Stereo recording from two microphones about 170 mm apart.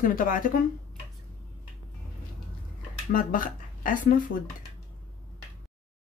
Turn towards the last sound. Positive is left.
turn(degrees=55)  # may be behind; listen again after turning